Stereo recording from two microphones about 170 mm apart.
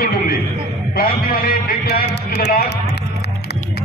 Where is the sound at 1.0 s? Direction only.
60° left (ahead or behind).